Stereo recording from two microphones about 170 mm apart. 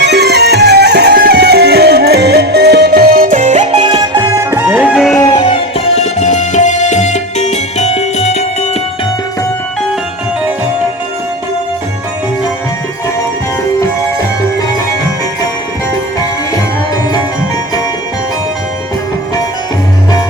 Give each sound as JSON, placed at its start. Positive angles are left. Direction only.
{"t": 0.0, "sound": "music", "side_deg": -80}
{"t": 5.1, "sound": "music", "side_deg": 25}
{"t": 5.4, "sound": "music", "side_deg": 35}